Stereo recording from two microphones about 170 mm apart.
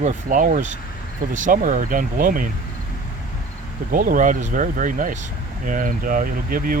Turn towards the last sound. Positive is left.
turn(degrees=-55)  # may be behind; listen again after turning